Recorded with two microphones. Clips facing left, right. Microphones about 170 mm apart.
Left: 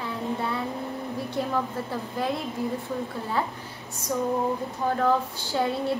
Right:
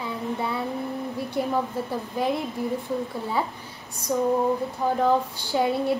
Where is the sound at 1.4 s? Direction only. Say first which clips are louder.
Right 3 dB; 15° right (ahead or behind).